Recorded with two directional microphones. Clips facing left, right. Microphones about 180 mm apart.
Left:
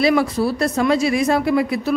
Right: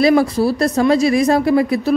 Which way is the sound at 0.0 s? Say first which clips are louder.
Right 4 dB; 40° right (ahead or behind).